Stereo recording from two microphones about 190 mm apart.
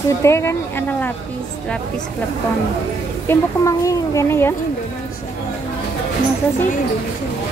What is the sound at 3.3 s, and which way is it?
Speech, 15° left (ahead or behind).